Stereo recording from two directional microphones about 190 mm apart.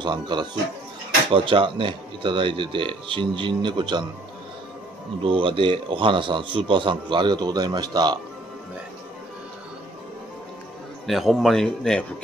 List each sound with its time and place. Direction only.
0.0 s a man's voice: 25° right (ahead or behind)
5.2 s a man's voice: 25° right (ahead or behind)
11.1 s speech: centre (ahead or behind)